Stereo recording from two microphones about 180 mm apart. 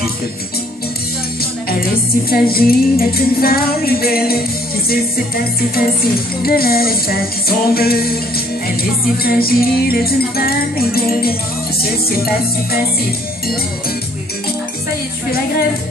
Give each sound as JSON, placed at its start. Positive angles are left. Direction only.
{"t": 1.4, "sound": "music", "side_deg": 55}
{"t": 9.2, "sound": "music", "side_deg": 55}